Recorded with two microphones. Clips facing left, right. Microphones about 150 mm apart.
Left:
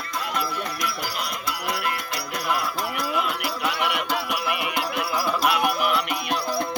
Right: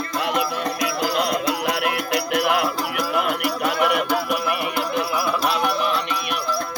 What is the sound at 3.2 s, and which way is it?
Music, 50° right (ahead or behind).